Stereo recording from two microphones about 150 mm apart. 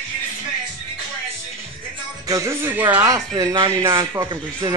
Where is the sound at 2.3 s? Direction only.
20° right (ahead or behind).